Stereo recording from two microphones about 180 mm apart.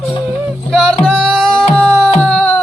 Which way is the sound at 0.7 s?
Centre (ahead or behind).